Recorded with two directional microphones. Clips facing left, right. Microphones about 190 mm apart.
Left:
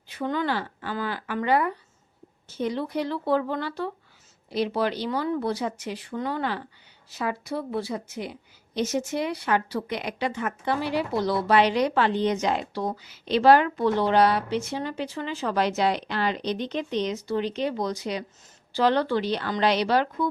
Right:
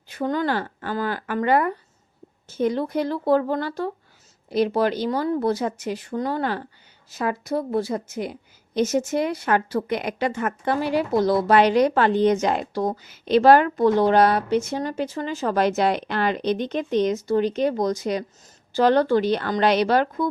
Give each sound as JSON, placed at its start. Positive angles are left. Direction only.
{"t": 0.1, "sound": "a woman's voice", "side_deg": -45}